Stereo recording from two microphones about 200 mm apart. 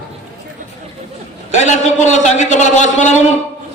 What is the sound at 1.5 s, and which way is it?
A man's voice, 35° left (ahead or behind).